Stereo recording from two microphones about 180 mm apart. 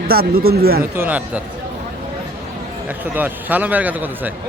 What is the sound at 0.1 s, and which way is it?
Speech, 55° right (ahead or behind).